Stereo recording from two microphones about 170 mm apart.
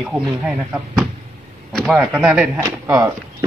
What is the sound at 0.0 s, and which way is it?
Speech, 5° right (ahead or behind).